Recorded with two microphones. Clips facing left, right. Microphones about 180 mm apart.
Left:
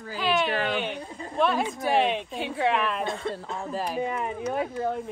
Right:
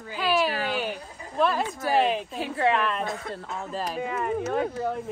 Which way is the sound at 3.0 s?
30° left (ahead or behind).